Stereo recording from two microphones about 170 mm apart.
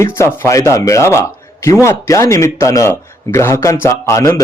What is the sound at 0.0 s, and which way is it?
A man's voice, 15° left (ahead or behind).